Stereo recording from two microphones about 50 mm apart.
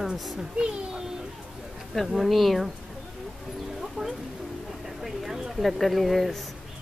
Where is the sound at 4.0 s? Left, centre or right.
Right.